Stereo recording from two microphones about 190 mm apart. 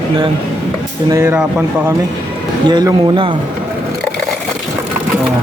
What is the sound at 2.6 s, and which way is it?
Speech, 25° right (ahead or behind).